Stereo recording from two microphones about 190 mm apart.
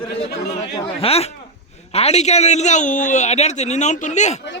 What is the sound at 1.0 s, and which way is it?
A man's voice, 30° left (ahead or behind).